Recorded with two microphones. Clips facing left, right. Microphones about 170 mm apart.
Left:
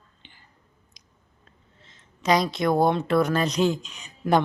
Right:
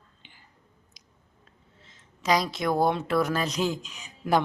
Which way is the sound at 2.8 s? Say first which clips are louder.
Left 2 dB; 5° right (ahead or behind).